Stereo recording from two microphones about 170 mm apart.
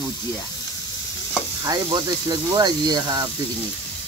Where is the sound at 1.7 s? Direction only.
25° right (ahead or behind).